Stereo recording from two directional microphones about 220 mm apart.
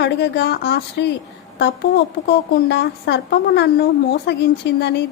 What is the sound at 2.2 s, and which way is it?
A woman's voice, 50° left (ahead or behind).